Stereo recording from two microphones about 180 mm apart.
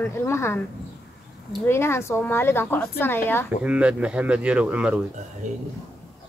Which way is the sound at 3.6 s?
5° right (ahead or behind).